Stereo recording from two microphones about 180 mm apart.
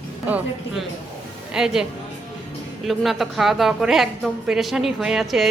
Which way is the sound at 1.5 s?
5° right (ahead or behind).